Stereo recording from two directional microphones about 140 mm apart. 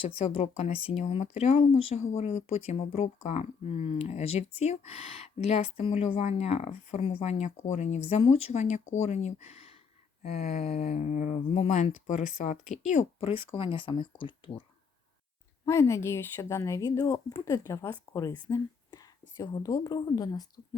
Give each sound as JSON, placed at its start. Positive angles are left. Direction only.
{"t": 0.2, "sound": "speech", "side_deg": 50}
{"t": 13.1, "sound": "speech", "side_deg": 40}
{"t": 15.6, "sound": "speech", "side_deg": 20}